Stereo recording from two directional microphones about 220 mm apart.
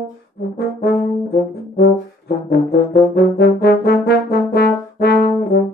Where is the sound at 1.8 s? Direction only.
45° left (ahead or behind).